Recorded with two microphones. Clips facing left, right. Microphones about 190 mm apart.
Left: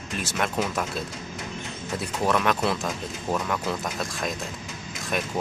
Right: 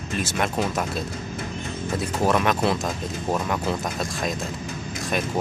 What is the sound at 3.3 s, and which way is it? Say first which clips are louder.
Speech: right 1 dB; 15° right (ahead or behind).